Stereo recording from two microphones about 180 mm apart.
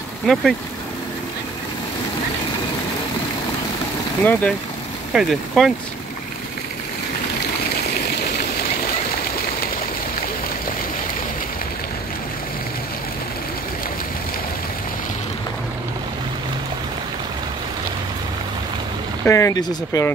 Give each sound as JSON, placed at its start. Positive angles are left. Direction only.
{"t": 0.3, "sound": "speech", "side_deg": 0}
{"t": 4.2, "sound": "speech", "side_deg": 10}
{"t": 19.2, "sound": "speech", "side_deg": 15}